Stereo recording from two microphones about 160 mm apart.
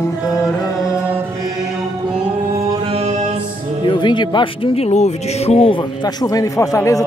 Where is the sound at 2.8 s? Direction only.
40° right (ahead or behind).